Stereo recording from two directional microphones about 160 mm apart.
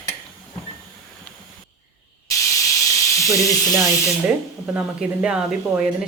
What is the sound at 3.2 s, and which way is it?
Speech, 20° left (ahead or behind).